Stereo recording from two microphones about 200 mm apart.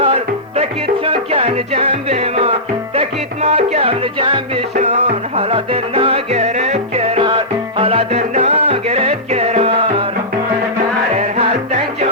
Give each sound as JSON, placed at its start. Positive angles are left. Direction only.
{"t": 0.0, "sound": "music", "side_deg": -30}
{"t": 11.1, "sound": "music", "side_deg": -35}